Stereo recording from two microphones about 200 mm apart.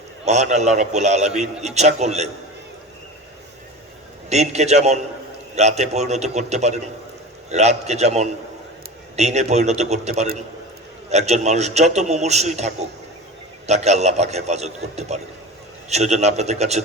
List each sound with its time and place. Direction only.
0.3 s a man's voice: 35° right (ahead or behind)
4.3 s a man's voice: 35° right (ahead or behind)